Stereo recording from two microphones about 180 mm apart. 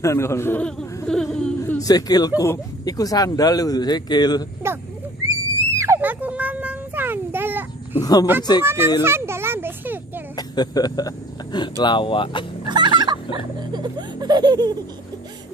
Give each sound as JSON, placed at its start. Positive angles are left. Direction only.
{"t": 0.0, "sound": "speech", "side_deg": 15}
{"t": 1.6, "sound": "speech", "side_deg": 20}
{"t": 5.8, "sound": "a sound", "side_deg": -15}
{"t": 8.0, "sound": "a sound", "side_deg": 20}
{"t": 8.6, "sound": "a child's voice", "side_deg": -15}
{"t": 9.0, "sound": "children playing", "side_deg": -15}
{"t": 10.3, "sound": "speech", "side_deg": 20}
{"t": 12.6, "sound": "fowl", "side_deg": -25}
{"t": 13.6, "sound": "laughter", "side_deg": -25}